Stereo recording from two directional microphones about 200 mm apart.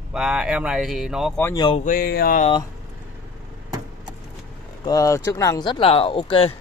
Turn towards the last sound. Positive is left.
turn(degrees=25)  # may be behind; listen again after turning